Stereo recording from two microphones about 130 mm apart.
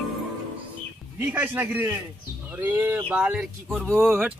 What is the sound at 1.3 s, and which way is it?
Speech, 15° right (ahead or behind).